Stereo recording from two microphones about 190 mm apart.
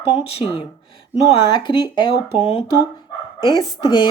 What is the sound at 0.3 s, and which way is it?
A woman's voice, 30° left (ahead or behind).